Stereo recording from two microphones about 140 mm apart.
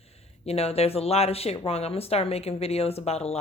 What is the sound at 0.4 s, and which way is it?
Speech, 45° left (ahead or behind).